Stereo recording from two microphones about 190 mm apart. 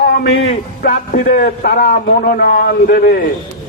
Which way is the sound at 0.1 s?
60° left (ahead or behind).